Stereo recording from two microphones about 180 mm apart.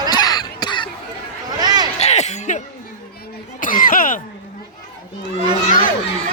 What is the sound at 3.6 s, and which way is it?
Cough, 50° left (ahead or behind).